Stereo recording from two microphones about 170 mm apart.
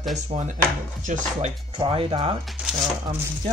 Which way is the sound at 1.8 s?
35° right (ahead or behind).